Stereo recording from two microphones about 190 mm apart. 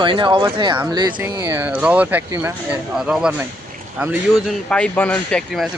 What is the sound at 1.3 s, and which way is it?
Speech, 15° right (ahead or behind).